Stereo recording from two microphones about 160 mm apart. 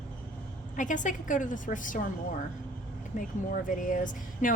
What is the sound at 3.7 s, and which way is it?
Speech, 55° left (ahead or behind).